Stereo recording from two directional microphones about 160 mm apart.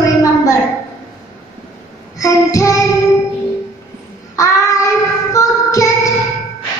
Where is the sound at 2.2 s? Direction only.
20° left (ahead or behind).